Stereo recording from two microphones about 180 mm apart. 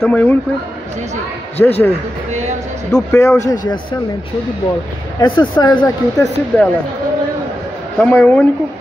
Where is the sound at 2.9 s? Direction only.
10° left (ahead or behind).